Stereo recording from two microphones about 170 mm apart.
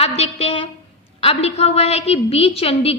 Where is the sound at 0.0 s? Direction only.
35° left (ahead or behind).